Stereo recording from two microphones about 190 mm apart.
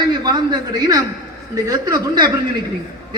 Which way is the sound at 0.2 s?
20° right (ahead or behind).